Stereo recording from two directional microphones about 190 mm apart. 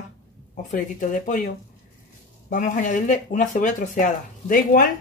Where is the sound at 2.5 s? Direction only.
45° left (ahead or behind).